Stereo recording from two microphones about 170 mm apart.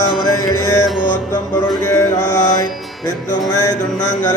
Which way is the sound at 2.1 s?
45° left (ahead or behind).